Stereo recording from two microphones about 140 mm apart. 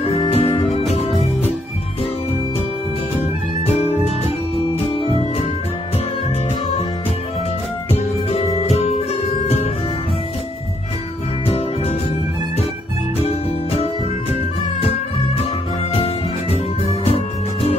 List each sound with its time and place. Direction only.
0.2 s music: 40° left (ahead or behind)
8.6 s music: 50° left (ahead or behind)
11.4 s music: 45° left (ahead or behind)
15.9 s music: 45° left (ahead or behind)